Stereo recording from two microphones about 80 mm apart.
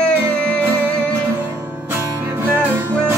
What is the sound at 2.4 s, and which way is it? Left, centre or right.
Music, right.